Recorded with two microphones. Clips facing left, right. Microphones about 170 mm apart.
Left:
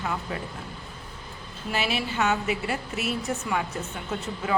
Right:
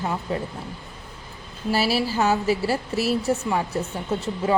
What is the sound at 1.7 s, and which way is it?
Speech, 35° right (ahead or behind).